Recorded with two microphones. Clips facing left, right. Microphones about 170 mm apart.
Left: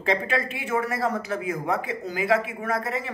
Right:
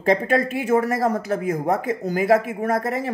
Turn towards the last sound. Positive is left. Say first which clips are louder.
# right 5 dB
turn(degrees=-45)  # may be behind; listen again after turning